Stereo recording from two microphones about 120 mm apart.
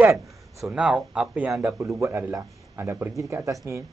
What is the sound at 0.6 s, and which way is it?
A man's voice, 5° right (ahead or behind).